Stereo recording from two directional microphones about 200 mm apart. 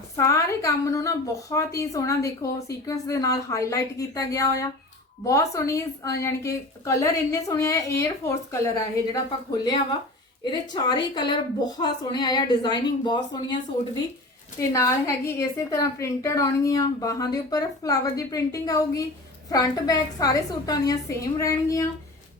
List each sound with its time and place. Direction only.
0.2 s a woman's voice: 15° left (ahead or behind)
10.4 s a woman's voice: 20° left (ahead or behind)